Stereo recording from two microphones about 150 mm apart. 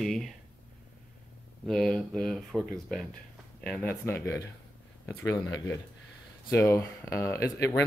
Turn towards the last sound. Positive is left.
turn(degrees=20)  # may be behind; listen again after turning